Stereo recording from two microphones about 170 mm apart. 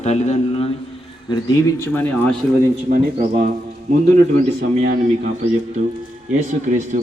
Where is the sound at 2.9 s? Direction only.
55° right (ahead or behind).